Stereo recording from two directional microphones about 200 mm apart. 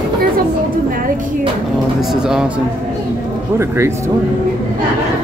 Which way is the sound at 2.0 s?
Centre (ahead or behind).